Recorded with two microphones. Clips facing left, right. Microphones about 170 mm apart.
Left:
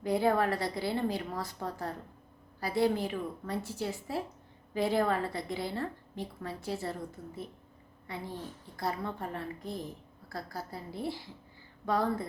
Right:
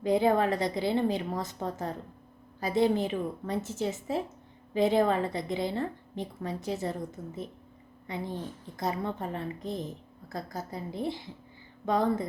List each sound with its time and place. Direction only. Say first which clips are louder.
0.0 s a woman's voice: right 3 dB; 20° right (ahead or behind)